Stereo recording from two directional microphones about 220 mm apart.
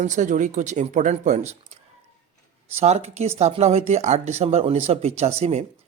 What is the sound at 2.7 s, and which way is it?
Speech, 30° right (ahead or behind).